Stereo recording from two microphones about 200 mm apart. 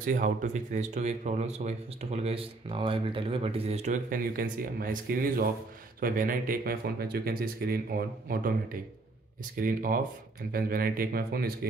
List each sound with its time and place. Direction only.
0.0 s speech: 40° right (ahead or behind)